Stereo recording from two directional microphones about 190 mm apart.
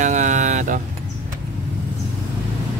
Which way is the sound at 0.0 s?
40° right (ahead or behind).